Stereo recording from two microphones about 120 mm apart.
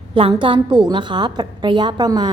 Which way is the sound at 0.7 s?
40° right (ahead or behind).